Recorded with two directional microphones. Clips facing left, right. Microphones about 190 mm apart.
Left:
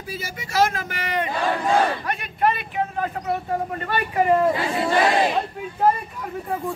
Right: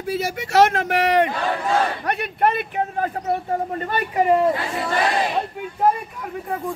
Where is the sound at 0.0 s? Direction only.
70° right (ahead or behind); by 3.1 s 45° right (ahead or behind).